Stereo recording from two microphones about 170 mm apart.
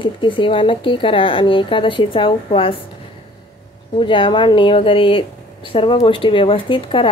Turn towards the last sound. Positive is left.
turn(degrees=30)  # may be behind; listen again after turning